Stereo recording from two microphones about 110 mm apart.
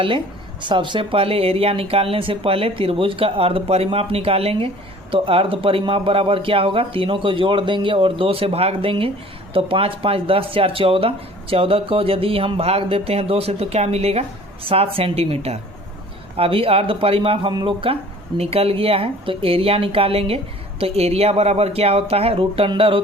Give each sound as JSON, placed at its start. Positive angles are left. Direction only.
{"t": 0.6, "sound": "speech", "side_deg": -45}
{"t": 18.3, "sound": "speech", "side_deg": -65}